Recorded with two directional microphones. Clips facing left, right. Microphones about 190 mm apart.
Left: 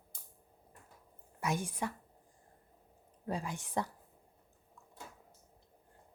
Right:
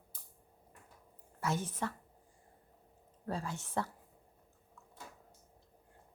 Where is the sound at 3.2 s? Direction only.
15° left (ahead or behind).